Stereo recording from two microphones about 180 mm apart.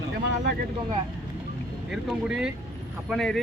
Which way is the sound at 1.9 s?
5° right (ahead or behind).